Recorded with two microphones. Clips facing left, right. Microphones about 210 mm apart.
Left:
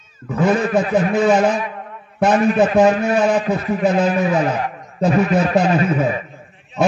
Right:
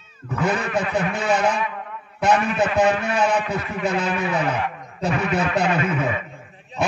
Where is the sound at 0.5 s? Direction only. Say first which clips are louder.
Left 7 dB; 35° left (ahead or behind).